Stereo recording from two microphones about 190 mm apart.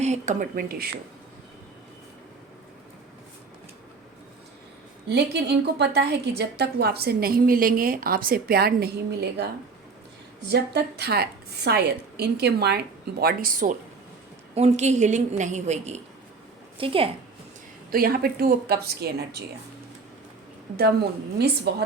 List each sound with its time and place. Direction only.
0.0 s a woman's voice: 40° right (ahead or behind)
5.0 s a woman's voice: 60° right (ahead or behind)
10.5 s a woman's voice: 60° right (ahead or behind)
14.5 s a woman's voice: 35° right (ahead or behind)
17.9 s a woman's voice: 50° right (ahead or behind)
20.7 s a woman's voice: 55° right (ahead or behind)